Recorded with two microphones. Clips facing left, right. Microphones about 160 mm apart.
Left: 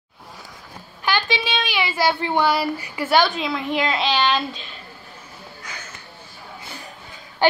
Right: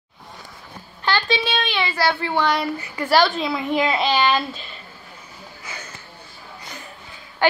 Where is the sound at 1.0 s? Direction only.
15° left (ahead or behind).